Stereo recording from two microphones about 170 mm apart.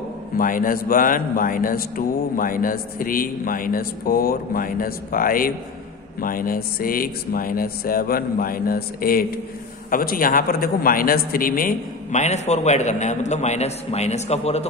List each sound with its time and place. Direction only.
0.4 s a man's voice: 55° left (ahead or behind); by 14.7 s 40° left (ahead or behind)